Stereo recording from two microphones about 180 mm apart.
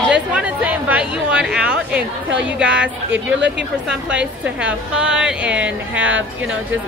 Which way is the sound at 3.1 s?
80° right.